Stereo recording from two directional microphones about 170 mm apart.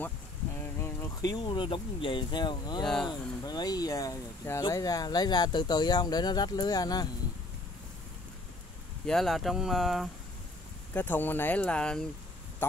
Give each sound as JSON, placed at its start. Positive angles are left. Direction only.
{"t": 0.7, "sound": "speech", "side_deg": 15}
{"t": 2.8, "sound": "speech", "side_deg": 5}
{"t": 3.1, "sound": "speech", "side_deg": 25}
{"t": 9.0, "sound": "speech", "side_deg": 0}
{"t": 10.9, "sound": "speech", "side_deg": 10}